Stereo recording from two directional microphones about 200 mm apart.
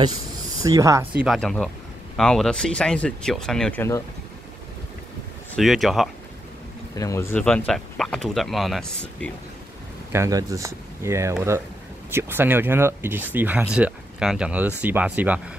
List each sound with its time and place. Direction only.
0.7 s speech: 15° right (ahead or behind)
1.2 s speech: centre (ahead or behind)
5.6 s speech: centre (ahead or behind)
7.0 s speech: 15° left (ahead or behind)
10.1 s speech: 15° right (ahead or behind)